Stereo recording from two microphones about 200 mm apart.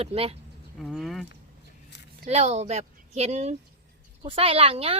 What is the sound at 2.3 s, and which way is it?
A woman's voice, 35° right (ahead or behind).